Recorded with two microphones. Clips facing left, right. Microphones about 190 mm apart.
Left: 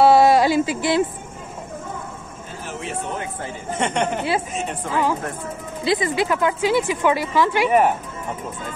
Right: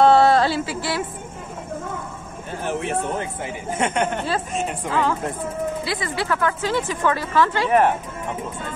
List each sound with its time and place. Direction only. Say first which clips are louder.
0.0 s a sound: left 1 dB; 10° left (ahead or behind)
2.6 s speech: right 6 dB; 60° right (ahead or behind)
3.7 s speech: even; 5° right (ahead or behind)
5.9 s a woman's voice: left 5 dB; 20° left (ahead or behind)